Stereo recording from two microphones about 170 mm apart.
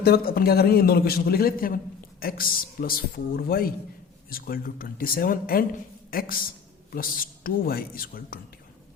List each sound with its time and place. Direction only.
0.0 s a man's voice: 65° left (ahead or behind)